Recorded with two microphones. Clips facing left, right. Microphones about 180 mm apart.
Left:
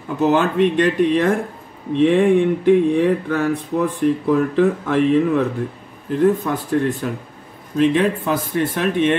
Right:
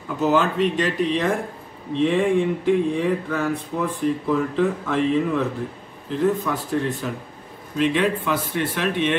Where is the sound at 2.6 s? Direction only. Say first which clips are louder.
Left 6 dB; 60° left (ahead or behind).